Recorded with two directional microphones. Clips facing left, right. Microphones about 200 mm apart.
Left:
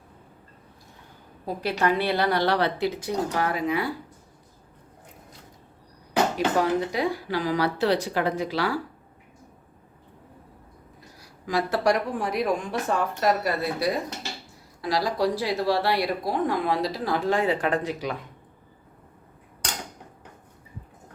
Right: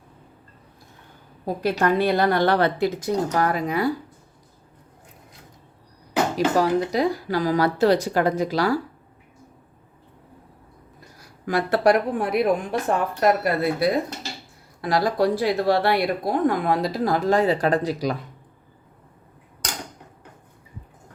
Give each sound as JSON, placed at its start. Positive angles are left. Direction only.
{"t": 1.6, "sound": "speech", "side_deg": -45}
{"t": 6.3, "sound": "speech", "side_deg": -40}
{"t": 11.4, "sound": "a woman's voice", "side_deg": -60}